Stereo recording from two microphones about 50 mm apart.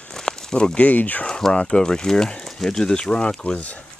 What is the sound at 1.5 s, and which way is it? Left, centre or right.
Speech, left.